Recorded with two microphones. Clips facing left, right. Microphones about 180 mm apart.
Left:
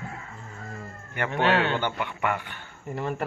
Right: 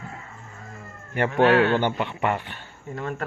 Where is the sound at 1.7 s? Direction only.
20° right (ahead or behind).